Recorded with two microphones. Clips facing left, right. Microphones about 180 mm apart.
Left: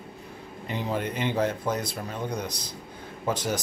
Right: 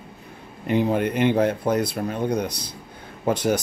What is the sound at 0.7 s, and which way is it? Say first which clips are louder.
Speech: right 9 dB; 60° right (ahead or behind).